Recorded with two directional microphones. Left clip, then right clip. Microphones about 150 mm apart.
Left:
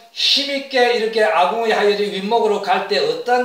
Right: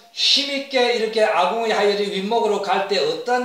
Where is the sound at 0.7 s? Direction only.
15° right (ahead or behind).